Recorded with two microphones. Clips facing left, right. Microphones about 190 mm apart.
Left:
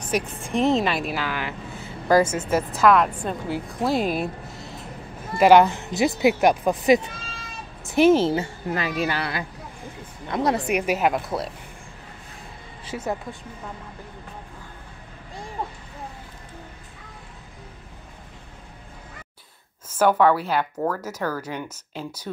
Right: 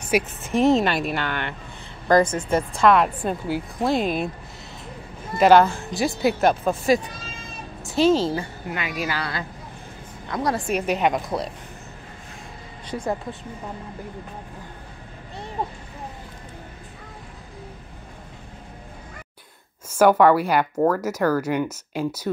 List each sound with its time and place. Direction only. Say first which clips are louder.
0.0 s a woman's voice: right 3 dB; 5° right (ahead or behind)
3.9 s speech: even; 5° left (ahead or behind); by 8.5 s 20° left (ahead or behind)
8.7 s speech: left 3 dB; 35° left (ahead or behind)
10.7 s a woman's voice: even; 10° left (ahead or behind)
12.8 s a woman's voice: right 2 dB; 5° left (ahead or behind)
19.9 s speech: right 3 dB; 10° right (ahead or behind)